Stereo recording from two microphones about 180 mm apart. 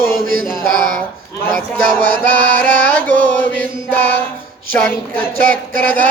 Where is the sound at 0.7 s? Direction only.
50° right (ahead or behind).